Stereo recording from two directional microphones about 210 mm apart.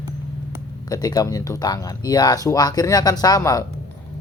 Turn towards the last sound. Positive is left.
turn(degrees=15)  # may be behind; listen again after turning